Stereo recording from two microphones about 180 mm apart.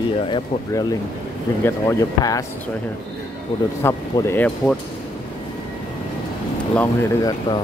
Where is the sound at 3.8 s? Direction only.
10° left (ahead or behind).